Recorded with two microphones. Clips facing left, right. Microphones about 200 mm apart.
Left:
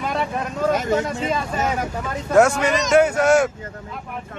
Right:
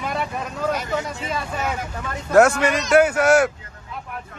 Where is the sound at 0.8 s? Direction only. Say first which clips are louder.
Left 5 dB; 45° left (ahead or behind).